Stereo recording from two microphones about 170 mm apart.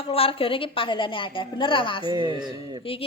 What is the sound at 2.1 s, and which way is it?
Speech, 25° right (ahead or behind).